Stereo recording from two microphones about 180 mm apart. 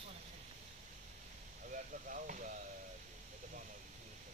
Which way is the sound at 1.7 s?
45° right (ahead or behind).